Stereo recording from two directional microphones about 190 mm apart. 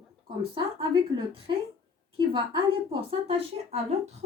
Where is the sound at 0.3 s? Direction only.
25° right (ahead or behind).